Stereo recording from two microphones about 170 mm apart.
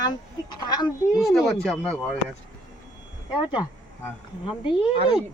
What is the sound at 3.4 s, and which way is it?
Speech, 25° left (ahead or behind).